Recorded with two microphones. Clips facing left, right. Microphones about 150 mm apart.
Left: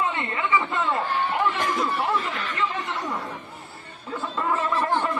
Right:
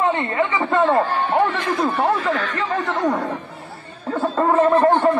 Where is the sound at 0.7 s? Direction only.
65° right (ahead or behind).